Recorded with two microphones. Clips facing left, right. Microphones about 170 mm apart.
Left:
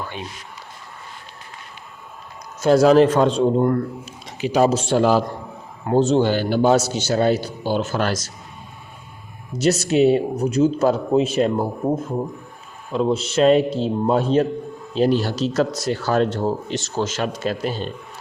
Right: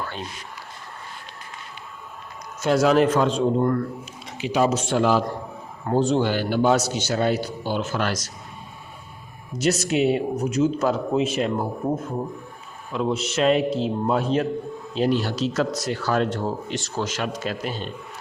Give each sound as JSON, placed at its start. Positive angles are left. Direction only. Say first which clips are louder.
{"t": 2.6, "sound": "speech", "louder": "left 5 dB", "side_deg": 35}
{"t": 9.6, "sound": "speech", "louder": "left 4 dB", "side_deg": 30}
{"t": 12.9, "sound": "speech", "louder": "left 4 dB", "side_deg": 35}